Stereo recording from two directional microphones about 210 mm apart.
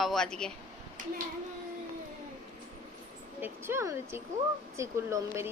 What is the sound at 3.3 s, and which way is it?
A woman's voice, 10° right (ahead or behind).